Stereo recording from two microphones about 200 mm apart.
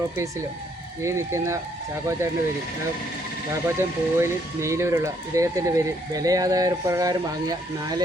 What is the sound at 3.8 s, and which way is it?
Speech, 15° right (ahead or behind).